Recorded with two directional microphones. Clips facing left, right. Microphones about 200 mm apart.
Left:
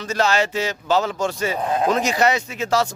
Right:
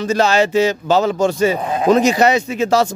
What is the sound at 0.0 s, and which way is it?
Speech, 25° right (ahead or behind).